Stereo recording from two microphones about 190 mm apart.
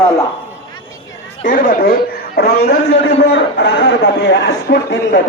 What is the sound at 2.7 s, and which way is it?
A man's voice, 60° left (ahead or behind).